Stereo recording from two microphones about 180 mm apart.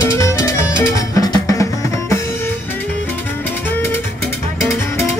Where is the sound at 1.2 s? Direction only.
20° left (ahead or behind).